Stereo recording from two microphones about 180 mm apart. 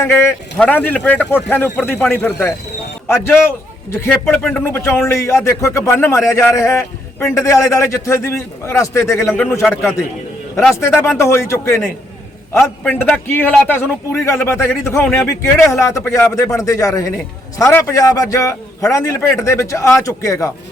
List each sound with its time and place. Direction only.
0.0 s a man's voice: 15° left (ahead or behind)
3.9 s a man's voice: 15° left (ahead or behind)
10.7 s a man's voice: 15° left (ahead or behind)
12.8 s a man's voice: 10° left (ahead or behind)